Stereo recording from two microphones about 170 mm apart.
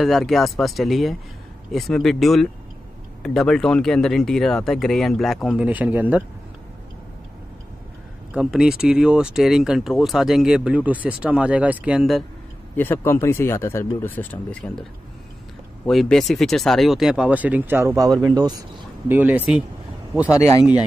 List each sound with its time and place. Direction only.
0.0 s speech: centre (ahead or behind)
8.3 s speech: 5° right (ahead or behind)
12.7 s speech: 10° left (ahead or behind)
15.9 s speech: centre (ahead or behind); by 18.5 s 25° right (ahead or behind)
19.0 s speech: 10° right (ahead or behind)
20.2 s speech: 20° left (ahead or behind)